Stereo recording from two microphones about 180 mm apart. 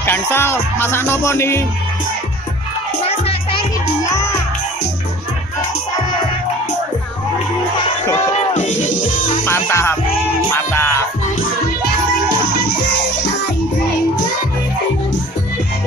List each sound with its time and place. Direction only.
0.0 s music: 10° left (ahead or behind)
4.1 s music: 15° left (ahead or behind)
8.5 s music: 45° left (ahead or behind)
9.4 s music: 15° left (ahead or behind)